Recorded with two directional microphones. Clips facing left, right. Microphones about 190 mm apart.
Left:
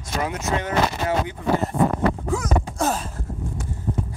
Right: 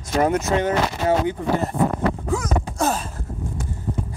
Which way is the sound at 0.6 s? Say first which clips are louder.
Right 2 dB; 30° right (ahead or behind).